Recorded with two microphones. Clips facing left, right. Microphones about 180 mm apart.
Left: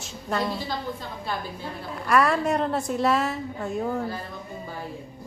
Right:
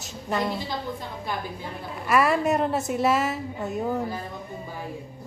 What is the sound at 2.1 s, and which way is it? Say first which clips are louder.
A woman's voice: even; 5° right (ahead or behind).